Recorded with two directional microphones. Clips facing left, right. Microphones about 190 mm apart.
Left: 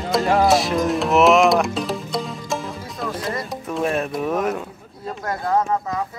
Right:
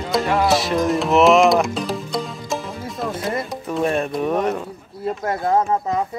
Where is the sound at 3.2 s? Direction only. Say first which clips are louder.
Right 2 dB; 25° right (ahead or behind).